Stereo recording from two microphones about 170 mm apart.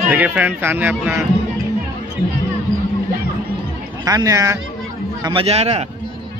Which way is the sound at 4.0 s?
20° right (ahead or behind).